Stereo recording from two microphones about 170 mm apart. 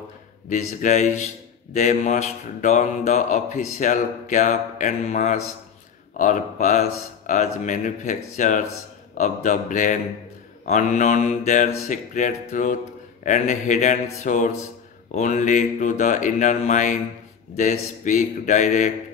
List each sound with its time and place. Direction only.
0.5 s a man's voice: 45° left (ahead or behind)